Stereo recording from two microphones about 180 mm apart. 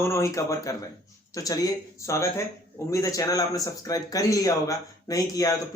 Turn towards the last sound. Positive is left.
turn(degrees=20)  # may be behind; listen again after turning